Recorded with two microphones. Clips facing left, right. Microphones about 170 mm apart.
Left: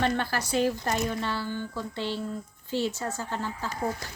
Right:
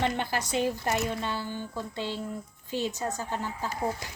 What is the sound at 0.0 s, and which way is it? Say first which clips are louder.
A woman's voice: left 2 dB; 20° right (ahead or behind).